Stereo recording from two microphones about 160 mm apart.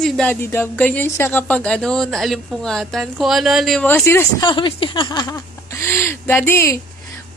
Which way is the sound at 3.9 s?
15° left (ahead or behind).